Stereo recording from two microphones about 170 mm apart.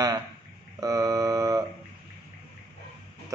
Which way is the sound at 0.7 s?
20° right (ahead or behind).